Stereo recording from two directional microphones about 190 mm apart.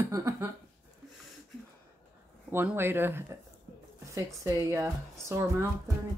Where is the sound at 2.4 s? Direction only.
10° right (ahead or behind).